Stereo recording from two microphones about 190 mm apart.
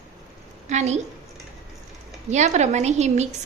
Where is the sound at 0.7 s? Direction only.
40° right (ahead or behind).